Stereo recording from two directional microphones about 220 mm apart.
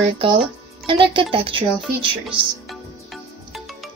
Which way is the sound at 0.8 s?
25° right (ahead or behind).